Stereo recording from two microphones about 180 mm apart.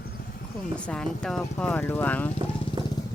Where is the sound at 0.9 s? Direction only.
5° left (ahead or behind).